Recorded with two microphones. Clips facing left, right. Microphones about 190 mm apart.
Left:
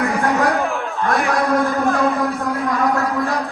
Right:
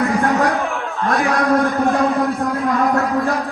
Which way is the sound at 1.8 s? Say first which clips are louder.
Right 2 dB; 15° right (ahead or behind).